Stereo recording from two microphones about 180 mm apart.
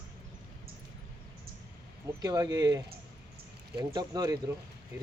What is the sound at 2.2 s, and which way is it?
Speech, 20° right (ahead or behind).